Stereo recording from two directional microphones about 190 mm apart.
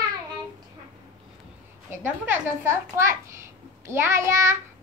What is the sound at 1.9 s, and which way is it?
A child's voice, 10° right (ahead or behind).